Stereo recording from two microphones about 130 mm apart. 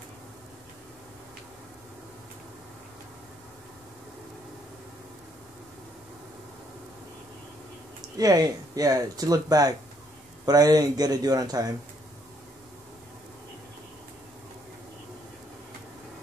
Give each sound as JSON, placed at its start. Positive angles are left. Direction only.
{"t": 8.2, "sound": "speech", "side_deg": -30}